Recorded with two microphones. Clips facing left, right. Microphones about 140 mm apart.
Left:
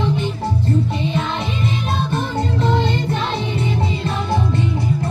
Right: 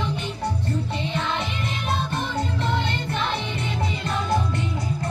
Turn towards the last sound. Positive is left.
turn(degrees=25)  # may be behind; listen again after turning